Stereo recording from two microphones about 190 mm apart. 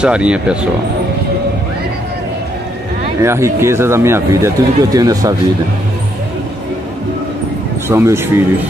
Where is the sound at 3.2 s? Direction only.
15° right (ahead or behind).